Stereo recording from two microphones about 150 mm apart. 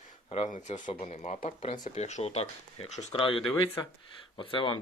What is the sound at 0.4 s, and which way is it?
Speech, 55° left (ahead or behind).